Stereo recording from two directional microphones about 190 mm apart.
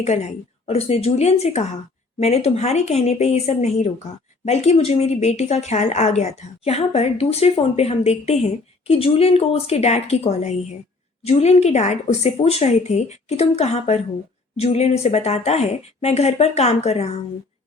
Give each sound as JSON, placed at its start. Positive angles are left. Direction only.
{"t": 0.6, "sound": "speech", "side_deg": 30}